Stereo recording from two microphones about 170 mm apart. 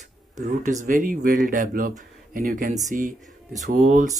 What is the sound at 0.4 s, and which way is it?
Speech, 45° right (ahead or behind).